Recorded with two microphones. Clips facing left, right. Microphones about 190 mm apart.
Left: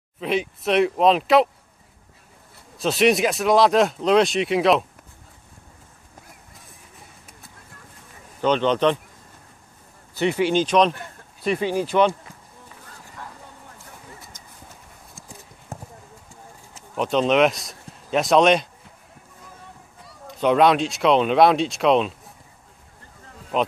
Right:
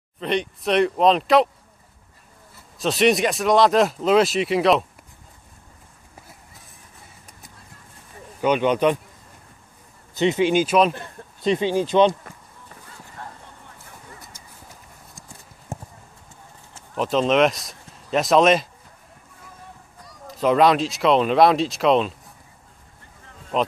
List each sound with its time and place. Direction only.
0.2 s speech: 5° left (ahead or behind)
2.8 s speech: centre (ahead or behind)
8.4 s speech: 10° right (ahead or behind)
10.1 s speech: 20° right (ahead or behind)
10.5 s speech: 5° right (ahead or behind)
11.0 s speech: 25° right (ahead or behind)
14.3 s vehicle: 10° right (ahead or behind)
15.7 s clip-clop: 25° right (ahead or behind)
16.9 s speech: centre (ahead or behind)
20.1 s speech: centre (ahead or behind)
23.5 s speech: centre (ahead or behind)